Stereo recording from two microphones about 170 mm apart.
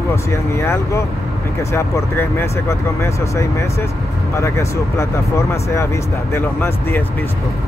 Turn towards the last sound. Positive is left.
turn(degrees=15)  # may be behind; listen again after turning